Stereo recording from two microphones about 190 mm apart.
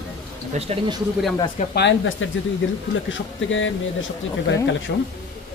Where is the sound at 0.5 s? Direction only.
30° right (ahead or behind).